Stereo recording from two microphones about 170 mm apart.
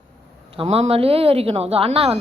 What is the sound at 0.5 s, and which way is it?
Speech, 35° right (ahead or behind).